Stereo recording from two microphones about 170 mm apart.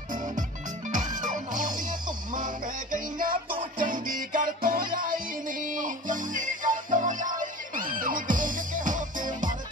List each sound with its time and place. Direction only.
0.9 s music: 50° right (ahead or behind)